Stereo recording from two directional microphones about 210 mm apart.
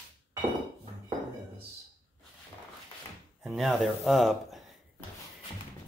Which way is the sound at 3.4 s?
Centre (ahead or behind).